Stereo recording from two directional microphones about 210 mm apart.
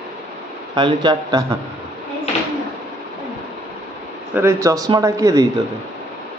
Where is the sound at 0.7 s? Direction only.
20° right (ahead or behind).